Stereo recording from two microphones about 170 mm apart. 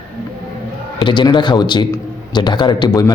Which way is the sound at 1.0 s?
30° left (ahead or behind).